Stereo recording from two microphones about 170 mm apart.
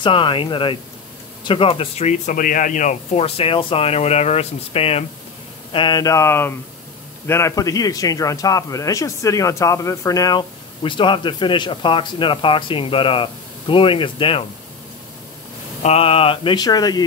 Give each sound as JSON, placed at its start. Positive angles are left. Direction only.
{"t": 0.0, "sound": "a man's voice", "side_deg": 30}
{"t": 15.8, "sound": "speech", "side_deg": 35}